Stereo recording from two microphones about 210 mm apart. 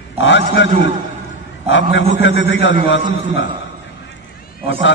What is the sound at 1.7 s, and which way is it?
A man's voice, 60° left (ahead or behind).